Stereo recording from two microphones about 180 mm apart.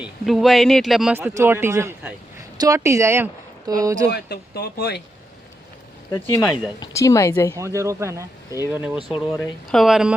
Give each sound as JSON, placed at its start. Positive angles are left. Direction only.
{"t": 0.0, "sound": "speech", "side_deg": 0}
{"t": 1.2, "sound": "speech", "side_deg": -15}
{"t": 4.1, "sound": "speech", "side_deg": 60}
{"t": 6.1, "sound": "a woman's voice", "side_deg": 20}
{"t": 7.5, "sound": "speech", "side_deg": -15}